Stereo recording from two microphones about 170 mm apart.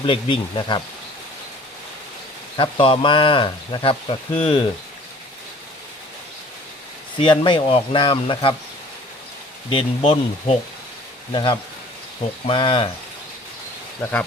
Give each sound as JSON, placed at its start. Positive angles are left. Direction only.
{"t": 0.0, "sound": "speech", "side_deg": 30}
{"t": 2.6, "sound": "speech", "side_deg": 30}
{"t": 7.2, "sound": "speech", "side_deg": 30}
{"t": 9.6, "sound": "speech", "side_deg": 30}
{"t": 14.0, "sound": "speech", "side_deg": 10}